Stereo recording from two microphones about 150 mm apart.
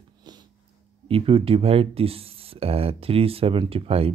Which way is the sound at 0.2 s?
30° right (ahead or behind).